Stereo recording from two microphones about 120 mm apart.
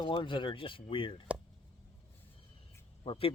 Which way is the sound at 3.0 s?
45° left (ahead or behind).